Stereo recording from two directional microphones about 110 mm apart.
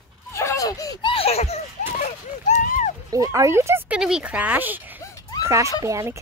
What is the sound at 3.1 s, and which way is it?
Speech, 30° right (ahead or behind).